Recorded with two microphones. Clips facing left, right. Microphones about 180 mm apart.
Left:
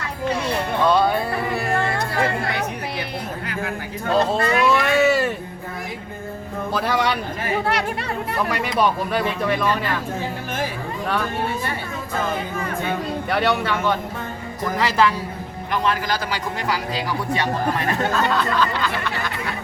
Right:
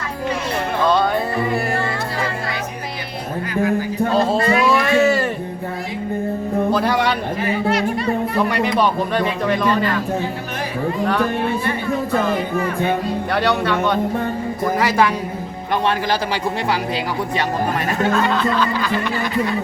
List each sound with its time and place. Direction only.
0.9 s music: 10° left (ahead or behind)
2.1 s music: 55° left (ahead or behind)
4.3 s a sound: centre (ahead or behind)
7.7 s music: 70° left (ahead or behind)
8.6 s speech: 5° left (ahead or behind)
13.3 s speech: 5° left (ahead or behind)
14.6 s speech: 15° right (ahead or behind)
15.7 s a man's voice: 30° right (ahead or behind)